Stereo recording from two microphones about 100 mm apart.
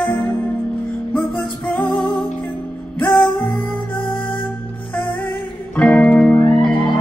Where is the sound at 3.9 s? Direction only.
55° left (ahead or behind).